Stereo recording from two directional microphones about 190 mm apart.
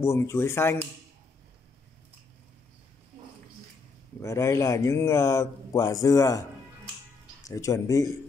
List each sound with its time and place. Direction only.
0.0 s a man's voice: 15° left (ahead or behind)
4.2 s a man's voice: 15° left (ahead or behind)
7.4 s a man's voice: 15° left (ahead or behind)